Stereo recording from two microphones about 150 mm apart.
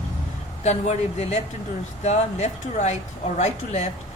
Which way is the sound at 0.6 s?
50° left (ahead or behind).